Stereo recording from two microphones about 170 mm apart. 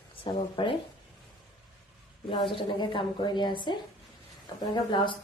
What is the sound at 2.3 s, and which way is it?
A woman's voice, 30° left (ahead or behind).